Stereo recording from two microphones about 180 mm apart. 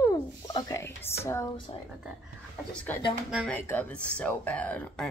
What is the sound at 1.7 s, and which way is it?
Speech, 30° left (ahead or behind).